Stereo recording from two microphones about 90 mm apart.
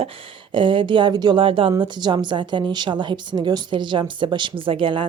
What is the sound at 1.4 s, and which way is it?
Speech, 80° right.